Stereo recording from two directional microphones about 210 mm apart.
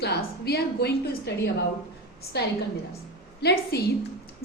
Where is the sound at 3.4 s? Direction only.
50° left (ahead or behind).